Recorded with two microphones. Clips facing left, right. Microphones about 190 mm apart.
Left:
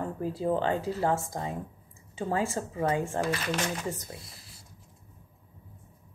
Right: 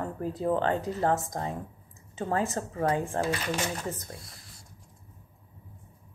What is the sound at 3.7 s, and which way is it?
Speech, 10° left (ahead or behind).